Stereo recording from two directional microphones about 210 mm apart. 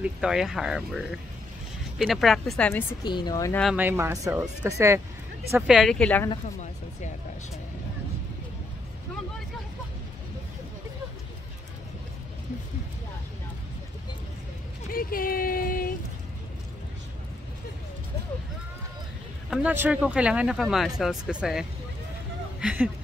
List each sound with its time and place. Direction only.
0.0 s speech: 5° right (ahead or behind); by 3.6 s 15° left (ahead or behind)
3.6 s speech: 10° right (ahead or behind)
5.5 s speech: centre (ahead or behind)
6.4 s speech: 35° left (ahead or behind)
14.9 s speech: 45° left (ahead or behind)
19.5 s speech: 10° right (ahead or behind)